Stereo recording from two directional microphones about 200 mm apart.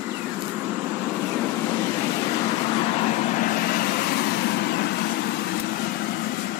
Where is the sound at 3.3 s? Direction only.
45° left (ahead or behind).